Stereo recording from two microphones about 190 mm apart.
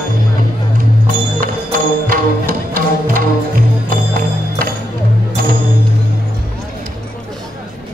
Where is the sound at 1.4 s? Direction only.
50° right (ahead or behind).